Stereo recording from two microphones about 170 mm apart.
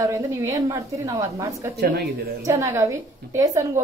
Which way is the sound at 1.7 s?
70° right (ahead or behind).